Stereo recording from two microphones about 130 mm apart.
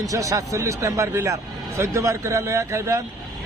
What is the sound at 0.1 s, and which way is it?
A man's voice, 25° right (ahead or behind).